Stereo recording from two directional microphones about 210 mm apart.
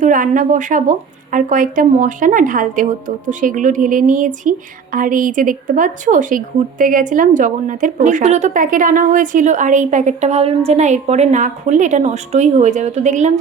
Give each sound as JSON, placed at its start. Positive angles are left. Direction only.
{"t": 0.0, "sound": "a woman's voice", "side_deg": -40}